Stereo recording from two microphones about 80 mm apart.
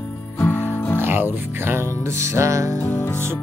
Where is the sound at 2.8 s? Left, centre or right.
Left.